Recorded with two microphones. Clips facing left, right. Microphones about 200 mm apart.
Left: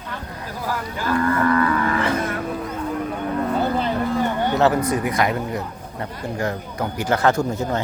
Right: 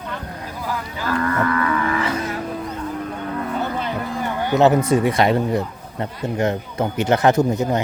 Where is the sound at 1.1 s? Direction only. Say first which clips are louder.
Left 2 dB; 30° left (ahead or behind).